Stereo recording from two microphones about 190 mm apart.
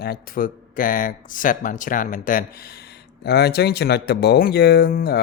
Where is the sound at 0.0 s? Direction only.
50° left (ahead or behind).